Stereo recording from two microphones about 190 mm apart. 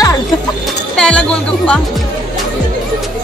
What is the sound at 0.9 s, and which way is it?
Speech, 5° left (ahead or behind).